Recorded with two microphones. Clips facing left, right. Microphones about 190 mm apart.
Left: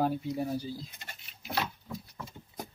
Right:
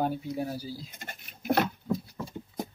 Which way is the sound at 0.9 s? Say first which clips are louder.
Right 6 dB; 50° right (ahead or behind).